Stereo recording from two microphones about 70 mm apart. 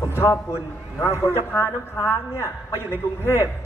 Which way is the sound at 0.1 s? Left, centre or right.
Left.